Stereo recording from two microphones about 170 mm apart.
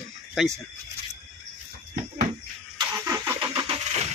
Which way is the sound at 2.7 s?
20° right (ahead or behind).